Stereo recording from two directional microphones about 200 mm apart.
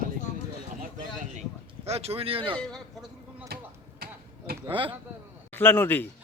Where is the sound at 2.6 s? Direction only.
5° left (ahead or behind).